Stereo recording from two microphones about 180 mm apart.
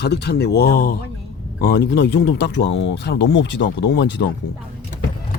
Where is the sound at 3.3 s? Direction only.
85° left.